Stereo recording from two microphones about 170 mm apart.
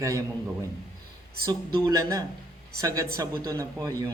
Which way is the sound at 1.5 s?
20° right (ahead or behind).